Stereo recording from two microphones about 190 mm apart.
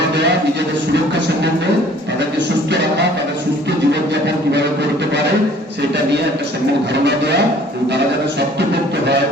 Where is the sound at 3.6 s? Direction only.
65° right (ahead or behind).